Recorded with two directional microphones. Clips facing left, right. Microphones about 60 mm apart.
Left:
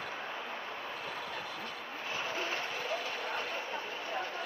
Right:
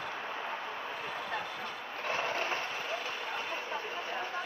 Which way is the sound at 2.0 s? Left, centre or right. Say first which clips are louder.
Right 4 dB; right.